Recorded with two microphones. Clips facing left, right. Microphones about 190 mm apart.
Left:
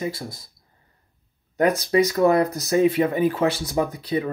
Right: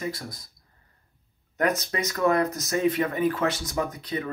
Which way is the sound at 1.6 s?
30° left (ahead or behind).